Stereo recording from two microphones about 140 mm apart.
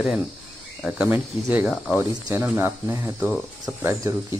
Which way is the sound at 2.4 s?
15° right (ahead or behind).